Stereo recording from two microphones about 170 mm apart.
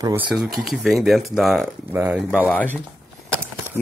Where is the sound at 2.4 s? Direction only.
10° left (ahead or behind).